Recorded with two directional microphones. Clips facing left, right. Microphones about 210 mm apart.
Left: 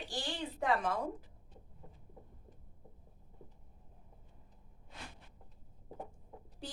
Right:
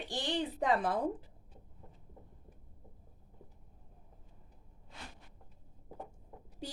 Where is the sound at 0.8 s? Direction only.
35° right (ahead or behind).